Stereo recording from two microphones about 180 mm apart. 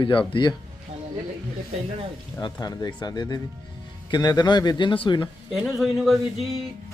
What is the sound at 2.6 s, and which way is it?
Speech, 25° left (ahead or behind).